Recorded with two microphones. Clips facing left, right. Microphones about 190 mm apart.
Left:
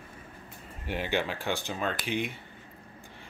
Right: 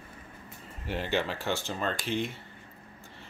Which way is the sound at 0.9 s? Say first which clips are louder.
Even; 10° left (ahead or behind).